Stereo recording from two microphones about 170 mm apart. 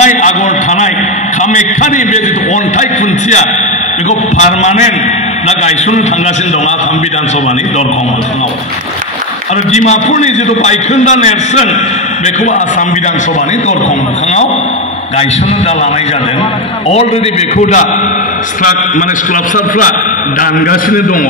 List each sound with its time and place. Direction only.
0.0 s a sound: 45° left (ahead or behind)
1.4 s a man's voice: 45° left (ahead or behind)
9.7 s a man's voice: 45° left (ahead or behind)
20.3 s a man's voice: 55° left (ahead or behind)